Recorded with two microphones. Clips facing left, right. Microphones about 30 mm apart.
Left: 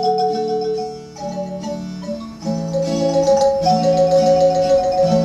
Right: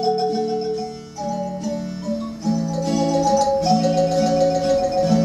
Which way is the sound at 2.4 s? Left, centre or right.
Centre.